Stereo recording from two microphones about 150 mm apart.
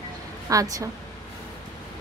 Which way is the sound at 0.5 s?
25° right (ahead or behind).